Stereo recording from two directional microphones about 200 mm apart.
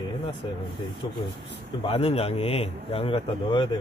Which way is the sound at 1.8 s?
30° left (ahead or behind).